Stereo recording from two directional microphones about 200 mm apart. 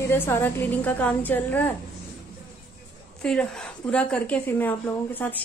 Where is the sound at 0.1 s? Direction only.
10° left (ahead or behind).